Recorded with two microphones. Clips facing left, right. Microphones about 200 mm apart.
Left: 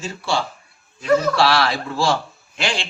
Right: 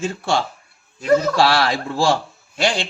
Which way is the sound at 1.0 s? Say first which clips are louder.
Right 1 dB; 40° right (ahead or behind).